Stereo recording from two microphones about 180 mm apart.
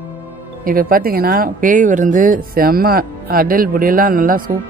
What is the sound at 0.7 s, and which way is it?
A woman's voice, 55° right (ahead or behind).